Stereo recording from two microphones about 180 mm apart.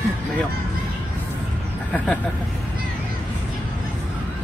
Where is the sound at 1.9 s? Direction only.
10° left (ahead or behind).